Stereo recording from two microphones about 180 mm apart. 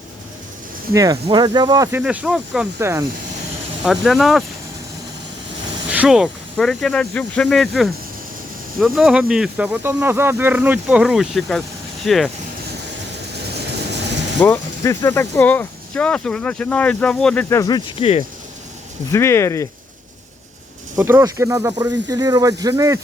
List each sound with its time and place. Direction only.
0.9 s speech: 20° right (ahead or behind)
2.0 s speech: 5° right (ahead or behind)
2.7 s speech: 15° right (ahead or behind)
3.8 s speech: centre (ahead or behind)
5.9 s speech: 5° right (ahead or behind)
14.4 s speech: 10° left (ahead or behind)
17.5 s speech: 20° left (ahead or behind)
19.1 s speech: 15° left (ahead or behind)
21.0 s speech: 15° right (ahead or behind)